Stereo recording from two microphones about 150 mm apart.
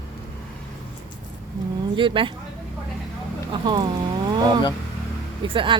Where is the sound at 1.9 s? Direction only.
35° right (ahead or behind).